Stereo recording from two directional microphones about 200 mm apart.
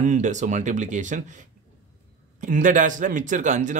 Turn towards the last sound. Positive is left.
turn(degrees=-40)  # may be behind; listen again after turning